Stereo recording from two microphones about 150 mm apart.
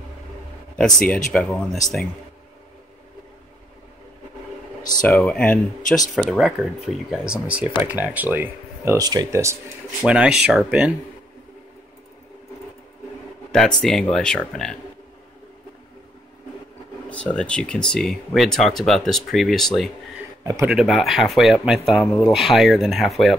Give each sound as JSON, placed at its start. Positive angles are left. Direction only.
{"t": 0.7, "sound": "speech", "side_deg": 5}
{"t": 5.0, "sound": "speech", "side_deg": 10}
{"t": 10.0, "sound": "speech", "side_deg": -5}
{"t": 13.5, "sound": "speech", "side_deg": 5}
{"t": 17.1, "sound": "speech", "side_deg": 10}